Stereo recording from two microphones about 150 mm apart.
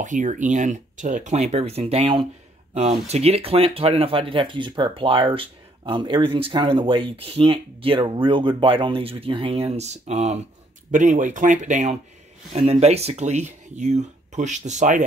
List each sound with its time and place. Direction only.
0.0 s speech: 55° right (ahead or behind)